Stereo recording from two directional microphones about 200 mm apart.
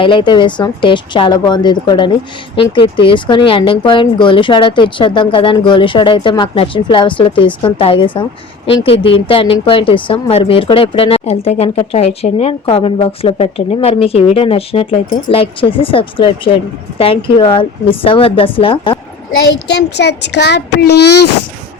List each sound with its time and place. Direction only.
0.0 s speech: 25° left (ahead or behind)
19.6 s a child's voice: 55° left (ahead or behind)